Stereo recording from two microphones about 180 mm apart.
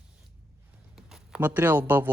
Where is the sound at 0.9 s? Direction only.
5° right (ahead or behind).